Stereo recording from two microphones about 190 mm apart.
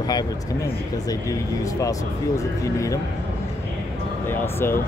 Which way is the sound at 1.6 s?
15° left (ahead or behind).